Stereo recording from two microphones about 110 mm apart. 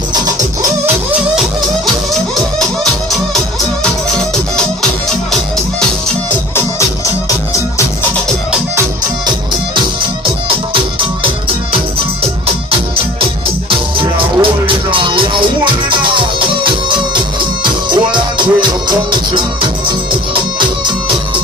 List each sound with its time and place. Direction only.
14.4 s music: 50° right (ahead or behind)